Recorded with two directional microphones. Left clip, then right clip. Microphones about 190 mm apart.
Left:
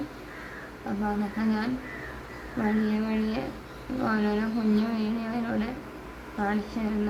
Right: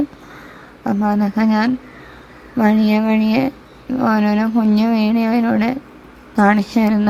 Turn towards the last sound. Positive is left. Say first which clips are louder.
# right 15 dB
turn(degrees=-55)  # may be behind; listen again after turning